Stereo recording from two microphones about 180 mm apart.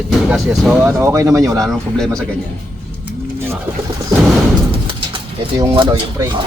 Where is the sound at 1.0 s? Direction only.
15° right (ahead or behind).